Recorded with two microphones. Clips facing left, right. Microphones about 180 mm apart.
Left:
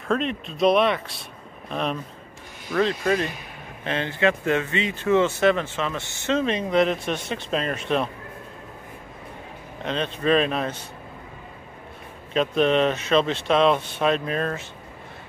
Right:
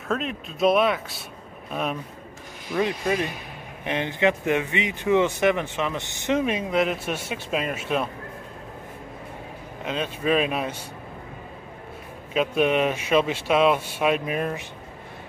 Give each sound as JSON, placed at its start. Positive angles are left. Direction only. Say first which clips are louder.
{"t": 0.1, "sound": "speech", "louder": "left 3 dB", "side_deg": -5}
{"t": 9.8, "sound": "speech", "louder": "left 2 dB", "side_deg": -10}
{"t": 12.4, "sound": "speech", "louder": "left 1 dB", "side_deg": -10}